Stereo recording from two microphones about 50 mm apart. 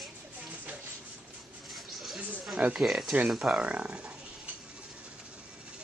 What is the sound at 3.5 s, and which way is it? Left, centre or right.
Speech, right.